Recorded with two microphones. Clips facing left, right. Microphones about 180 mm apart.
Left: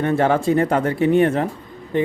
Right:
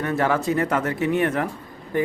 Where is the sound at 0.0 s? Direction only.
25° left (ahead or behind).